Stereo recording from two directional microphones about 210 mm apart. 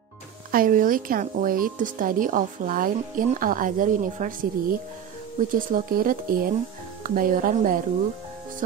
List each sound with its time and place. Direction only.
0.5 s speech: 40° right (ahead or behind)